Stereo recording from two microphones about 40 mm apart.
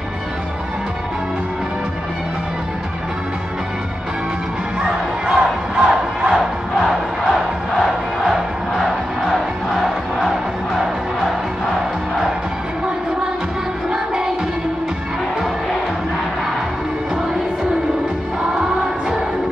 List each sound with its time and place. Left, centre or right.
4.8 s crowd: centre
13.8 s music: centre
18.5 s music: centre